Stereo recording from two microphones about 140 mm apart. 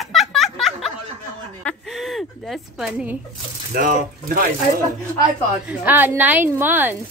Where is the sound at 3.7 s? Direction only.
90° right.